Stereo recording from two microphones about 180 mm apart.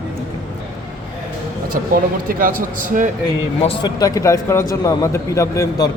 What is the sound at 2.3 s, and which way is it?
Speech, 50° right (ahead or behind).